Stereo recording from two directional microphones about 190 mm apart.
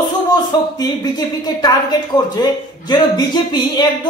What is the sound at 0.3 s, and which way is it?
Speech, 20° left (ahead or behind).